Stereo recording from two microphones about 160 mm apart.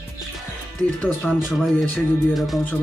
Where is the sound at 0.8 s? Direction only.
5° left (ahead or behind).